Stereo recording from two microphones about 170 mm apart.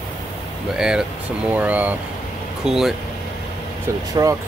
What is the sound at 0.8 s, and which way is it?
Speech, 5° right (ahead or behind).